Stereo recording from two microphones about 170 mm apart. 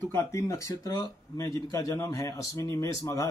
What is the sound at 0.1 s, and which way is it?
Speech, 15° left (ahead or behind).